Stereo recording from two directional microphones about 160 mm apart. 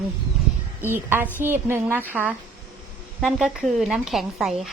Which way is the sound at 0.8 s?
15° right (ahead or behind).